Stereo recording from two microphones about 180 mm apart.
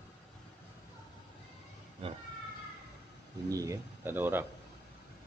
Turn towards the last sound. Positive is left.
turn(degrees=-10)  # may be behind; listen again after turning